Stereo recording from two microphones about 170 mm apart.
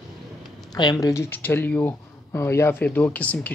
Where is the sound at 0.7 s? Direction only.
20° left (ahead or behind).